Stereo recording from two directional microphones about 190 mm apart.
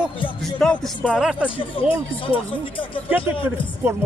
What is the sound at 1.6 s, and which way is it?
Speech, 30° left (ahead or behind).